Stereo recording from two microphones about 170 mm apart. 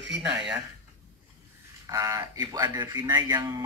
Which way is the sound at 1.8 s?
20° right (ahead or behind).